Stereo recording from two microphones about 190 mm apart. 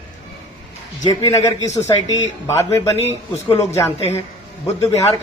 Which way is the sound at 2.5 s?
15° left (ahead or behind).